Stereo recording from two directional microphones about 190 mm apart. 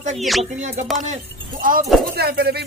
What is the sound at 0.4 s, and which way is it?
Speech, 35° right (ahead or behind).